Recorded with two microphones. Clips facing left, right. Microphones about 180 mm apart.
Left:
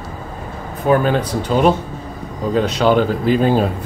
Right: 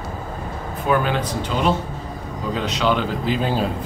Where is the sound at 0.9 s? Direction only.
40° left (ahead or behind).